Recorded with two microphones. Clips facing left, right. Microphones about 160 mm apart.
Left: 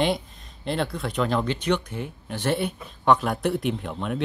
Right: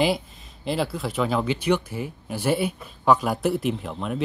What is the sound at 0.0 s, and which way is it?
Speech, centre (ahead or behind).